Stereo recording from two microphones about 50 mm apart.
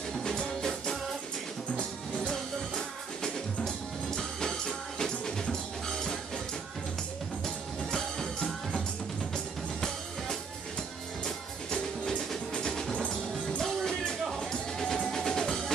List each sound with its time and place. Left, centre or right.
0.2 s music: centre
1.7 s music: centre
3.6 s music: centre
7.4 s music: centre
12.5 s music: centre
12.9 s music: left